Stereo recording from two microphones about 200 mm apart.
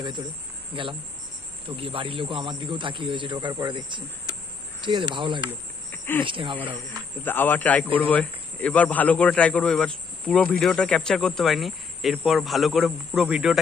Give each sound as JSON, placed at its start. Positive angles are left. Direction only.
{"t": 0.0, "sound": "a man's voice", "side_deg": -25}
{"t": 5.9, "sound": "a sound", "side_deg": 10}
{"t": 6.2, "sound": "a man's voice", "side_deg": -25}
{"t": 7.2, "sound": "speech", "side_deg": 10}